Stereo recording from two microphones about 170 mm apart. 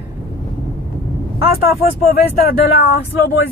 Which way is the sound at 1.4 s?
60° left (ahead or behind).